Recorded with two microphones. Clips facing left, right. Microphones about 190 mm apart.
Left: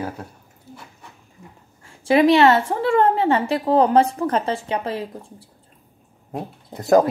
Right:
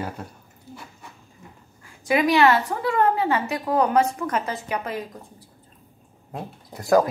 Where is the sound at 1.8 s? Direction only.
30° left (ahead or behind).